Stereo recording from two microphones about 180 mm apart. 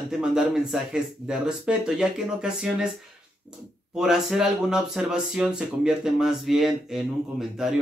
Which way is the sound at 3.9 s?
5° right (ahead or behind).